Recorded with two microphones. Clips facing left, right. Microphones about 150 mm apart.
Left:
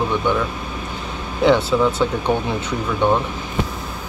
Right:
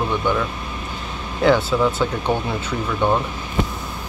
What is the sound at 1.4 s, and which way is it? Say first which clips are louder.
Speech: left 1 dB; 5° right (ahead or behind).